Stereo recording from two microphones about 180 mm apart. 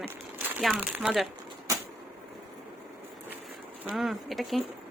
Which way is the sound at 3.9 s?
Centre (ahead or behind).